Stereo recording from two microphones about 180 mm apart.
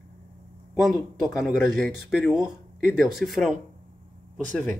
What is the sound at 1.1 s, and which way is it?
Speech, centre (ahead or behind).